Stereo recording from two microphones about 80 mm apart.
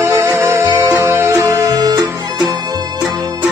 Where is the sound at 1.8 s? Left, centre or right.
Right.